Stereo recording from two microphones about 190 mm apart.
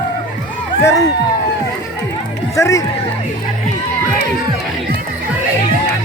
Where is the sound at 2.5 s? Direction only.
15° left (ahead or behind).